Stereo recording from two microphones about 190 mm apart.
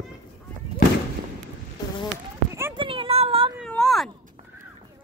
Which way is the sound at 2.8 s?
30° right (ahead or behind).